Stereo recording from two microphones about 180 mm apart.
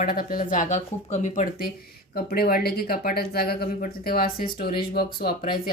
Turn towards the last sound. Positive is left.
turn(degrees=55)  # may be behind; listen again after turning